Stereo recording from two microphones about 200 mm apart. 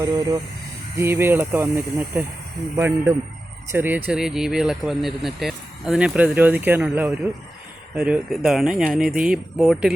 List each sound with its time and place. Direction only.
0.0 s speech: 20° right (ahead or behind); by 9.9 s centre (ahead or behind)